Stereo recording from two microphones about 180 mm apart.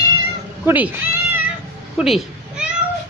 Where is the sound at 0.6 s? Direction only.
10° right (ahead or behind).